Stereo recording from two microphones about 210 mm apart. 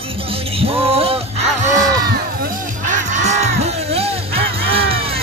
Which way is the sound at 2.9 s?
35° right (ahead or behind).